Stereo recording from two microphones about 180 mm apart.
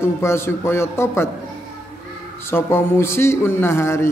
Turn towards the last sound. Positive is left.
turn(degrees=15)  # may be behind; listen again after turning